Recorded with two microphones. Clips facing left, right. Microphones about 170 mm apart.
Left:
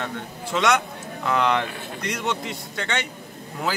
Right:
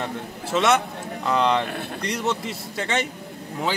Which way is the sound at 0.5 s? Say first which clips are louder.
Right 1 dB; 5° right (ahead or behind).